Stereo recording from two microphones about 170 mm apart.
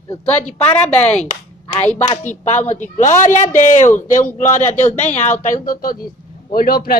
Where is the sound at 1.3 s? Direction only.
40° left (ahead or behind).